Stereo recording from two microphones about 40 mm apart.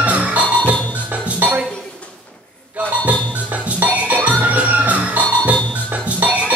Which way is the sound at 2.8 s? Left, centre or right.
Right.